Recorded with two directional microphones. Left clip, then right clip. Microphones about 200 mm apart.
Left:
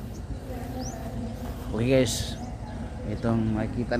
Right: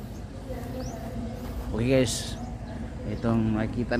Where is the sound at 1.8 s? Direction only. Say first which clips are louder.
Left 1 dB; centre (ahead or behind).